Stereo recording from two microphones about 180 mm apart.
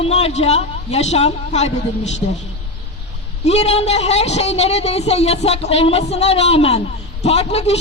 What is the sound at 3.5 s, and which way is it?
A woman's voice, 35° left (ahead or behind).